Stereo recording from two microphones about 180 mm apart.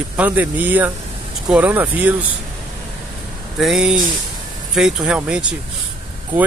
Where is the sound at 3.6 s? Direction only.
Centre (ahead or behind).